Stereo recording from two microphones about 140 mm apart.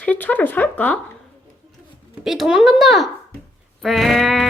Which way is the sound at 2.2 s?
Centre (ahead or behind).